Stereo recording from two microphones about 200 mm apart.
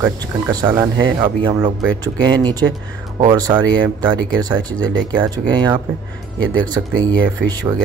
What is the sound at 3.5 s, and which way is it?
Speech, 10° right (ahead or behind).